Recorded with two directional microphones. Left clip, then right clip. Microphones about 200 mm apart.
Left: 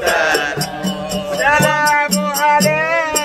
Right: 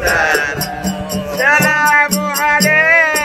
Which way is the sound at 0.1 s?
5° left (ahead or behind).